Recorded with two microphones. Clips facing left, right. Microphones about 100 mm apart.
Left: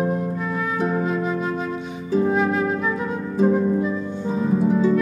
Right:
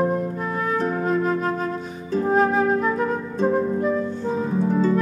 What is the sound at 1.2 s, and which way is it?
Flute, 45° right (ahead or behind).